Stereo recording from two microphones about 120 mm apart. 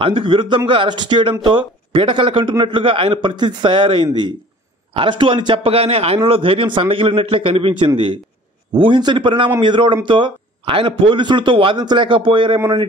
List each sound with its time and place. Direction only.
0.0 s a man's voice: 45° right (ahead or behind)